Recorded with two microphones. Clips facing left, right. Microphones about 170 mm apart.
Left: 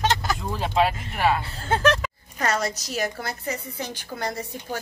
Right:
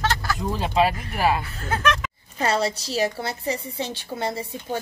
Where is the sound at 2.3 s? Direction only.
30° right (ahead or behind).